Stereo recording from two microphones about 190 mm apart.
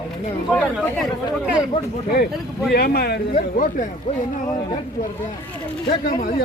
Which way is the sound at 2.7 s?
55° left (ahead or behind).